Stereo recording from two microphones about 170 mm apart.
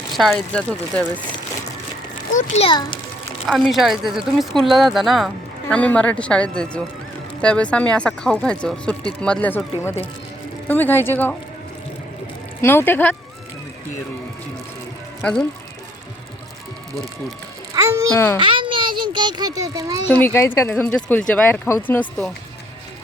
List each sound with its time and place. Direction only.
0.1 s speech: centre (ahead or behind)
2.3 s a child's voice: 45° left (ahead or behind)
2.6 s a child's voice: 30° left (ahead or behind)
3.4 s speech: centre (ahead or behind)
12.6 s speech: 15° left (ahead or behind)
15.2 s speech: 5° left (ahead or behind)
16.9 s speech: centre (ahead or behind)
17.8 s babbling: 15° right (ahead or behind)
18.3 s a child's voice: 30° right (ahead or behind)
20.1 s speech: 10° left (ahead or behind)